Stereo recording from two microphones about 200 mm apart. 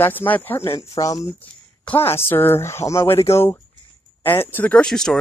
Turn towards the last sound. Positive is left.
turn(degrees=5)  # may be behind; listen again after turning